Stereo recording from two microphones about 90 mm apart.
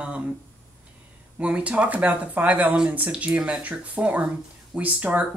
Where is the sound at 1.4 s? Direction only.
15° right (ahead or behind).